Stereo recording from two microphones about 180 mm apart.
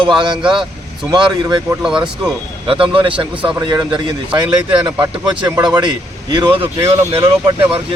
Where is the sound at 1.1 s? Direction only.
25° right (ahead or behind).